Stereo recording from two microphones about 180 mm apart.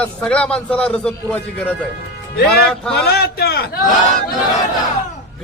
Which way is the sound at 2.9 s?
60° left (ahead or behind).